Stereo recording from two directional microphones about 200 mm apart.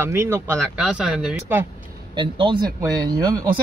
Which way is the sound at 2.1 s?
25° right (ahead or behind).